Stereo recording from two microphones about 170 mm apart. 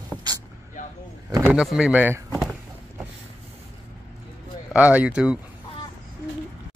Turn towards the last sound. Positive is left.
turn(degrees=-5)  # may be behind; listen again after turning